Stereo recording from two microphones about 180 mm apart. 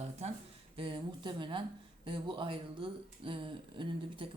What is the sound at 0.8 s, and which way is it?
Speech, 25° right (ahead or behind).